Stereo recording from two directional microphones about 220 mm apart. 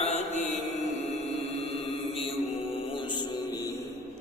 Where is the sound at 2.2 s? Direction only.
25° left (ahead or behind).